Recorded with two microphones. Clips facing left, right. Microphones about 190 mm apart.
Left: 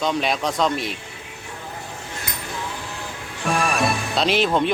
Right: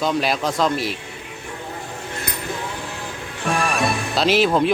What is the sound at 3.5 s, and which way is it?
Music, centre (ahead or behind).